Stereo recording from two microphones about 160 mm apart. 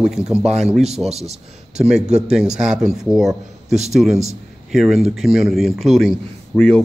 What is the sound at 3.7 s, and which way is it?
Speech, 45° right (ahead or behind).